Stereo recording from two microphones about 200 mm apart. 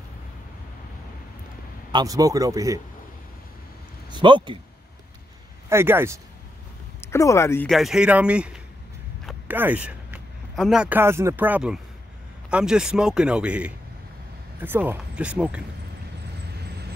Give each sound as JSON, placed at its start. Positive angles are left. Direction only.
{"t": 1.9, "sound": "speech", "side_deg": -20}
{"t": 4.1, "sound": "speech", "side_deg": -25}
{"t": 5.7, "sound": "speech", "side_deg": -10}
{"t": 7.0, "sound": "speech", "side_deg": 15}
{"t": 7.7, "sound": "speech", "side_deg": 0}